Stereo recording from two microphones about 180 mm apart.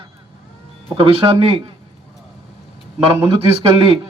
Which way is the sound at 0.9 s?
30° right (ahead or behind).